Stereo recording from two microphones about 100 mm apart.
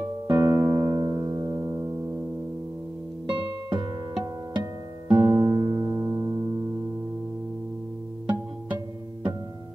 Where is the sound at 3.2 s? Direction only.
60° right (ahead or behind).